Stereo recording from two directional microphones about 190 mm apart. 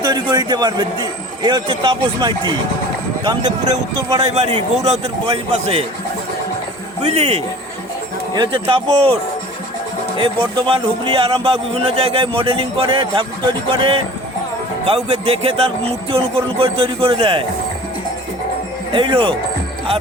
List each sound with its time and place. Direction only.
0.0 s a man's voice: 20° right (ahead or behind)
4.1 s a man's voice: 30° right (ahead or behind)
7.0 s a man's voice: 35° right (ahead or behind)
10.2 s a man's voice: 25° right (ahead or behind)
18.9 s a man's voice: 25° right (ahead or behind)